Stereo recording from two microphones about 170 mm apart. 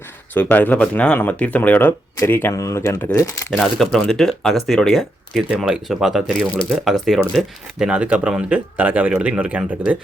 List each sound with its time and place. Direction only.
0.3 s speech: 10° left (ahead or behind)
3.5 s speech: centre (ahead or behind)